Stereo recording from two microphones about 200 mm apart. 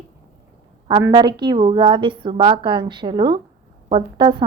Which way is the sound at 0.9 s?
20° right (ahead or behind).